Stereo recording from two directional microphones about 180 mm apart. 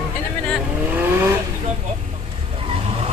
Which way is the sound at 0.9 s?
10° right (ahead or behind).